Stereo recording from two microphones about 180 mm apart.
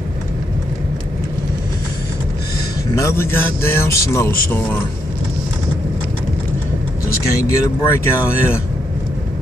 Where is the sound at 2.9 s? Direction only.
15° left (ahead or behind).